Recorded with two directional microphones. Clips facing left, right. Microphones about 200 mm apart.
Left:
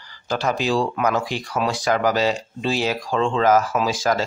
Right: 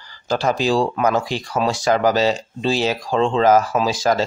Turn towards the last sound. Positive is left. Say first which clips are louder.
# right 2 dB
turn(degrees=-30)  # may be behind; listen again after turning